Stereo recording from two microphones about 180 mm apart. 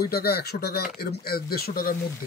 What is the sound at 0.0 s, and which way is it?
Speech, 60° left (ahead or behind).